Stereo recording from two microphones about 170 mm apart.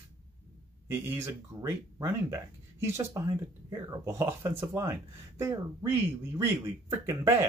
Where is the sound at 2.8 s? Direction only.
15° right (ahead or behind).